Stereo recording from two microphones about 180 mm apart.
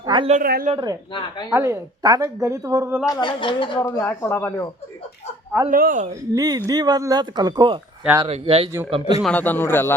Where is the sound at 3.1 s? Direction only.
25° left (ahead or behind).